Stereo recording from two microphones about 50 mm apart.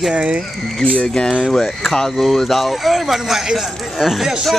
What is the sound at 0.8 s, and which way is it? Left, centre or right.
Speech, left.